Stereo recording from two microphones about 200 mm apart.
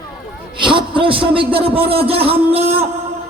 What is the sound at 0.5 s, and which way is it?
A man's voice, 25° right (ahead or behind).